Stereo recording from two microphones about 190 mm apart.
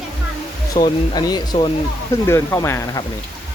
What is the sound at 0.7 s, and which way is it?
Speech, 20° left (ahead or behind).